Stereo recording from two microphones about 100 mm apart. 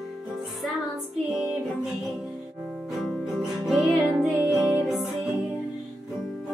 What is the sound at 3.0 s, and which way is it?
Music, 5° right (ahead or behind).